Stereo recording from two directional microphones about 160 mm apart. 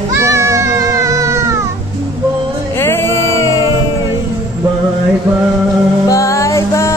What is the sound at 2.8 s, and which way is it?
Music, 15° left (ahead or behind).